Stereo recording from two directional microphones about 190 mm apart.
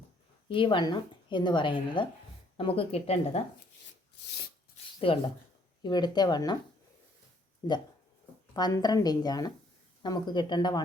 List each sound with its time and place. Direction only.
0.4 s a woman's voice: 25° left (ahead or behind)
4.9 s speech: 30° left (ahead or behind)
8.5 s speech: 20° left (ahead or behind)